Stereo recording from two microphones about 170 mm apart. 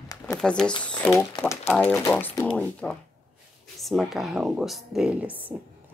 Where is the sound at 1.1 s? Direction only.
15° left (ahead or behind).